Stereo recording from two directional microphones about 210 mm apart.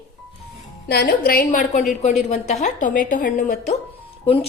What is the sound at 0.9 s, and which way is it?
A woman's voice, 45° left (ahead or behind).